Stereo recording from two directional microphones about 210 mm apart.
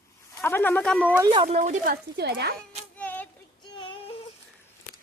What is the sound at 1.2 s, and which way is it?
Speech, 20° right (ahead or behind).